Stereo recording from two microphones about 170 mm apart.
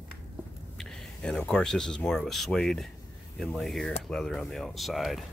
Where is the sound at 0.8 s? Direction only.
5° left (ahead or behind).